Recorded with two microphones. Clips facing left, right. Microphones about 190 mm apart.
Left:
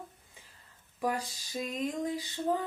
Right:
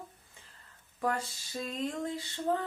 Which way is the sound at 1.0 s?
15° left (ahead or behind).